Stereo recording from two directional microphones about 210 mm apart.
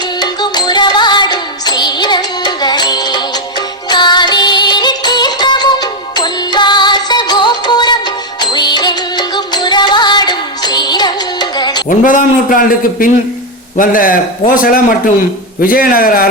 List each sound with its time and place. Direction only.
0.2 s music: 20° left (ahead or behind)
11.9 s a man's voice: 40° left (ahead or behind)